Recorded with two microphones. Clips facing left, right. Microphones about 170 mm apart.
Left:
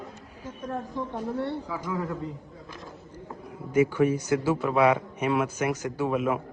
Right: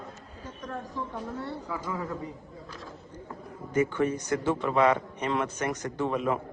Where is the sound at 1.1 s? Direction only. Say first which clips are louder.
Left 5 dB; 30° left (ahead or behind).